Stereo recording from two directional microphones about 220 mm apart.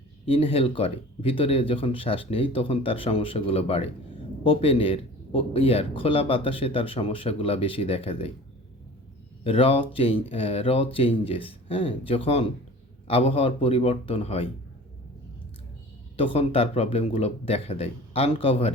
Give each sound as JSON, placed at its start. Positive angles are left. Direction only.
{"t": 0.3, "sound": "speech", "side_deg": 25}
{"t": 9.4, "sound": "speech", "side_deg": 25}
{"t": 16.1, "sound": "speech", "side_deg": 25}